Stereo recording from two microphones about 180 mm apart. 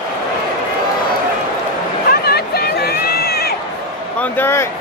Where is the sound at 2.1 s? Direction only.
60° left (ahead or behind).